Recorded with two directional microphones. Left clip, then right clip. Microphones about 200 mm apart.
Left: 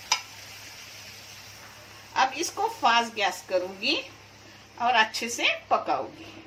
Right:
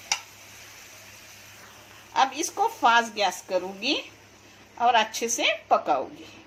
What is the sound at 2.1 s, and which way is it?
A woman's voice, 50° right (ahead or behind).